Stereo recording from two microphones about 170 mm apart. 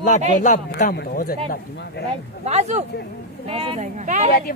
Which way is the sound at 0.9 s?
60° left (ahead or behind).